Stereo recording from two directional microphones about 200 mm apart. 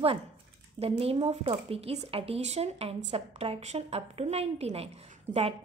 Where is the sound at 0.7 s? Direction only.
30° right (ahead or behind).